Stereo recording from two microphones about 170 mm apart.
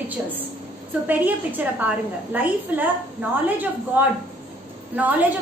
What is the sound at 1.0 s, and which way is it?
A woman's voice, 10° right (ahead or behind).